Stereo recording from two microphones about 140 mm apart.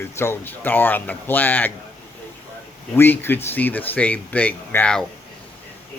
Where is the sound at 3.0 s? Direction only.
15° left (ahead or behind).